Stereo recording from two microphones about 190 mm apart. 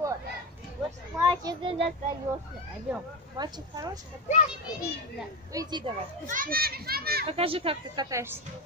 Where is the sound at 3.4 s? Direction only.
20° right (ahead or behind).